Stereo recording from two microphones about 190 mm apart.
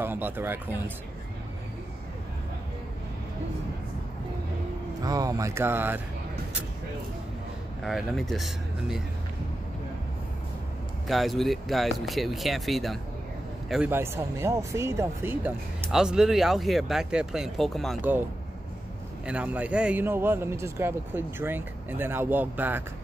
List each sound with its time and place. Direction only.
0.0 s a man's voice: 10° right (ahead or behind)
5.0 s a man's voice: 20° right (ahead or behind)
7.8 s speech: centre (ahead or behind)
11.1 s speech: centre (ahead or behind)
19.2 s a man's voice: 5° right (ahead or behind)